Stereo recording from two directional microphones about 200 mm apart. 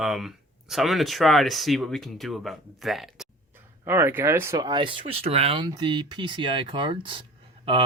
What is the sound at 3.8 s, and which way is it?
Speech, 10° right (ahead or behind).